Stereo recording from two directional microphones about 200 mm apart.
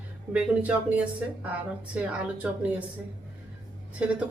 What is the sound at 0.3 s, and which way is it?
Speech, 5° right (ahead or behind).